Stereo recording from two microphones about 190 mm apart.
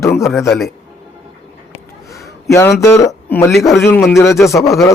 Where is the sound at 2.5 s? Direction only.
15° left (ahead or behind).